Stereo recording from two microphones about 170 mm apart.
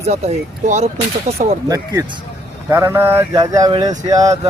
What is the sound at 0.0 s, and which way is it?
Speech, 40° right (ahead or behind).